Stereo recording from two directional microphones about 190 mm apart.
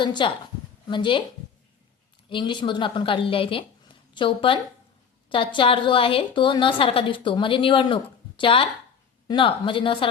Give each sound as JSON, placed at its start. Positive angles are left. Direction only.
{"t": 0.0, "sound": "a woman's voice", "side_deg": 25}
{"t": 2.3, "sound": "a woman's voice", "side_deg": 25}